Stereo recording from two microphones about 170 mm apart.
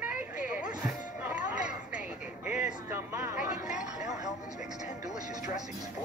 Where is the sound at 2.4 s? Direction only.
10° right (ahead or behind).